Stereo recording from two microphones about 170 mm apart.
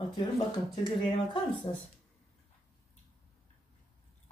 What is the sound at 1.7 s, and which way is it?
Speech, 35° left (ahead or behind).